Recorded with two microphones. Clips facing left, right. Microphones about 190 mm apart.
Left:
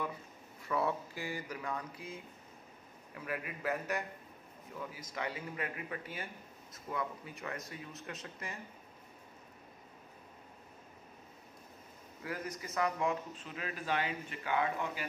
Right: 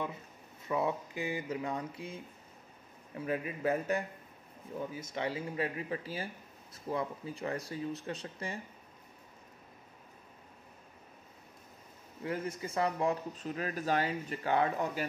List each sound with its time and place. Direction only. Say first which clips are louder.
0.7 s speech: right 2 dB; 20° right (ahead or behind)
3.2 s speech: right 6 dB; 25° right (ahead or behind)
12.2 s speech: right 5 dB; 25° right (ahead or behind)